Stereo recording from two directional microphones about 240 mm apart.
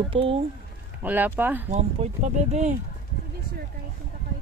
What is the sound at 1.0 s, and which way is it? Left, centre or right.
Speech, centre.